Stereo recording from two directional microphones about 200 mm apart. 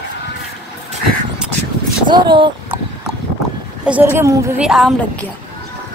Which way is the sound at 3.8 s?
10° right (ahead or behind).